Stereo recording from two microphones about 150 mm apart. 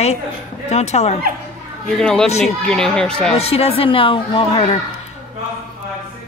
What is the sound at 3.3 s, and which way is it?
Speech, 40° left (ahead or behind).